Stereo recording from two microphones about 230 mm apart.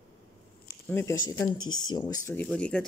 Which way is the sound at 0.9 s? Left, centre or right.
Centre.